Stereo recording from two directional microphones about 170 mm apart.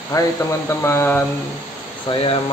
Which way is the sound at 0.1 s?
20° left (ahead or behind).